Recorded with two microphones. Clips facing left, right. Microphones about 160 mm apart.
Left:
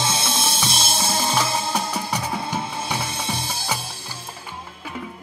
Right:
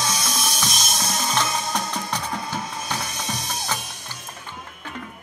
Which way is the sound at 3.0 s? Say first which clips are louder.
Left 3 dB; 30° left (ahead or behind).